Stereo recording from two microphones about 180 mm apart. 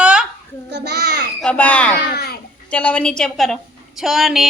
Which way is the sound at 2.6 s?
10° left (ahead or behind).